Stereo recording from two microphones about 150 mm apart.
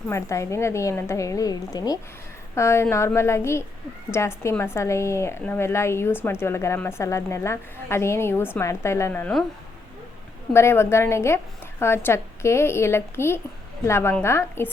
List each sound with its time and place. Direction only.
0.1 s a woman's voice: 20° left (ahead or behind)
10.5 s a woman's voice: 15° left (ahead or behind)